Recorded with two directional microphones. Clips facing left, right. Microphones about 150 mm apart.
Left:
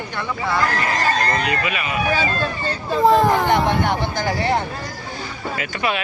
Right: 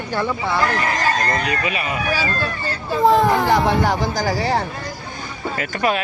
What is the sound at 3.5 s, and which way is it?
Speech, 35° right (ahead or behind).